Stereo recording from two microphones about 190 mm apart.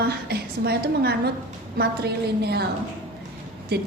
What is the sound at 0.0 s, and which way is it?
A woman's voice, 60° right (ahead or behind).